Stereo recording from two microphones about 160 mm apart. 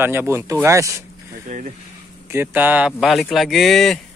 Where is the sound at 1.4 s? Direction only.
50° right (ahead or behind).